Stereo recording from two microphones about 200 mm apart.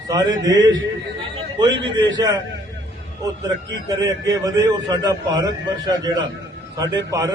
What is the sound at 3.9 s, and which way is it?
A man's voice, 20° right (ahead or behind).